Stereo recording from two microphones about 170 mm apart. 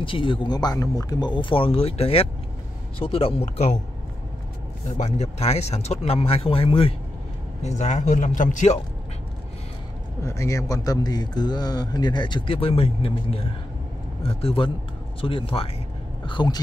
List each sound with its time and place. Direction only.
0.0 s a man's voice: 30° left (ahead or behind)
4.9 s speech: 40° left (ahead or behind)
10.2 s a man's voice: 15° left (ahead or behind)